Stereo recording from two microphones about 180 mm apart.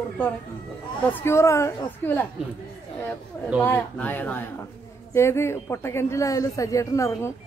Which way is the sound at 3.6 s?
10° left (ahead or behind).